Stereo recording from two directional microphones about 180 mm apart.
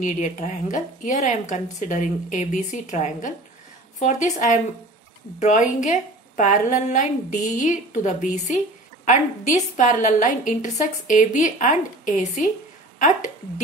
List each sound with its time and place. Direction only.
0.0 s a woman's voice: 45° left (ahead or behind)